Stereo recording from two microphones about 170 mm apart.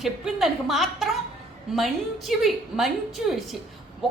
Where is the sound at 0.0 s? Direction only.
Centre (ahead or behind).